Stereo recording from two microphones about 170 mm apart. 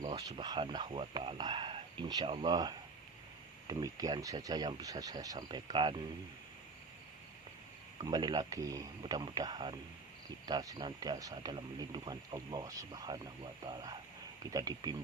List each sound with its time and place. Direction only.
0.1 s speech: 25° right (ahead or behind)
8.0 s speech: 25° right (ahead or behind)